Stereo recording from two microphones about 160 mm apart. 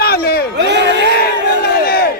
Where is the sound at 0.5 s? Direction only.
90° right.